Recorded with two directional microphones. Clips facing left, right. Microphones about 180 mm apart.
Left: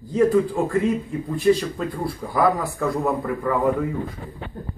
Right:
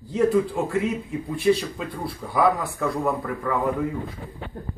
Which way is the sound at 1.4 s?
5° right (ahead or behind).